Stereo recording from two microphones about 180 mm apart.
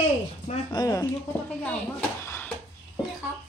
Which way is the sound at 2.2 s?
15° left (ahead or behind).